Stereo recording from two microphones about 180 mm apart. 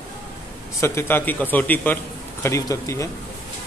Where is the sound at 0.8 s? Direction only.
15° left (ahead or behind).